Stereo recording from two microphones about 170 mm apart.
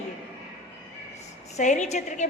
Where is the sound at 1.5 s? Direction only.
45° left (ahead or behind).